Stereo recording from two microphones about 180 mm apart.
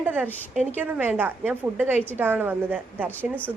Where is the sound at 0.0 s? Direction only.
10° right (ahead or behind).